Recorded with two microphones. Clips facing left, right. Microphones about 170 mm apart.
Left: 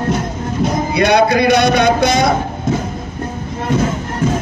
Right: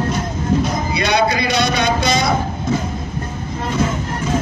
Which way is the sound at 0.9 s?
55° left (ahead or behind).